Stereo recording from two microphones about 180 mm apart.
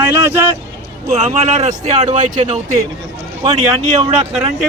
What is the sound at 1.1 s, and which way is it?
Speech, 40° right (ahead or behind).